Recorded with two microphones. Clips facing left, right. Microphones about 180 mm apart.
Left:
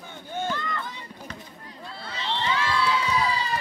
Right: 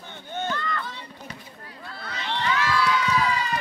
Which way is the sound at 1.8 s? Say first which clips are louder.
Even; 25° left (ahead or behind).